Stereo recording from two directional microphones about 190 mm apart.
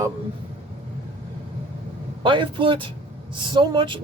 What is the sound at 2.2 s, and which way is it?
Speech, 25° right (ahead or behind).